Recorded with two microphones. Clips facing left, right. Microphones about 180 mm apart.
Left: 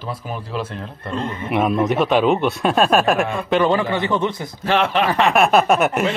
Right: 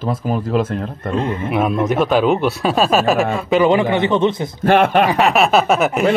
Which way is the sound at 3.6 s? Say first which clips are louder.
Right 4 dB; 15° right (ahead or behind).